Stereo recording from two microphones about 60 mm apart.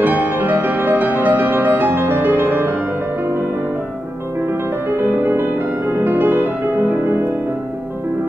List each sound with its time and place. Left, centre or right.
0.0 s music: right
4.9 s music: right